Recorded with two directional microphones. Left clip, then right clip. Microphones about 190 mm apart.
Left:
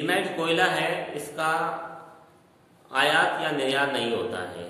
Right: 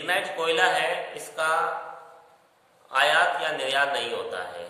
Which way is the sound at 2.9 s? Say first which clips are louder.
Right 1 dB; 20° right (ahead or behind).